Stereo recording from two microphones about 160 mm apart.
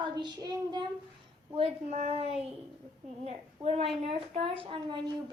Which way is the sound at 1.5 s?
40° right (ahead or behind).